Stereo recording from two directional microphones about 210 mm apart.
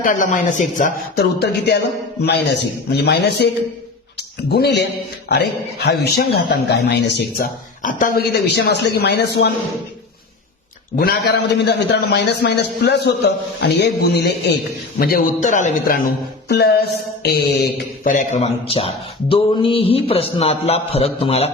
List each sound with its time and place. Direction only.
0.0 s a woman's voice: 35° left (ahead or behind)
10.9 s a man's voice: 45° left (ahead or behind)
16.5 s music: 50° left (ahead or behind); by 21.5 s 30° left (ahead or behind)